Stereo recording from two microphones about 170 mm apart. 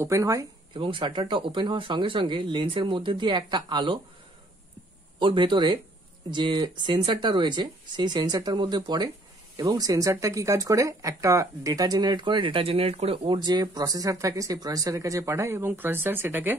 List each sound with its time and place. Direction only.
0.0 s speech: 20° right (ahead or behind)
0.7 s speech: 30° right (ahead or behind)
5.2 s speech: 30° right (ahead or behind); by 16.5 s 10° right (ahead or behind)